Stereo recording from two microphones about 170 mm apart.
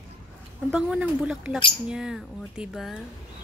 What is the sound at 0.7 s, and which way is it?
Speech, 5° right (ahead or behind).